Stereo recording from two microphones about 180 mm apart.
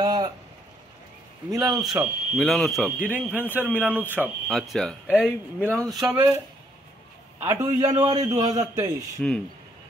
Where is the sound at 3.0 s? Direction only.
10° right (ahead or behind); by 5.3 s 5° left (ahead or behind).